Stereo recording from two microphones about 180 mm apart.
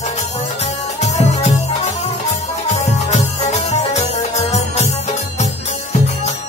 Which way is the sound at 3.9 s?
40° left (ahead or behind).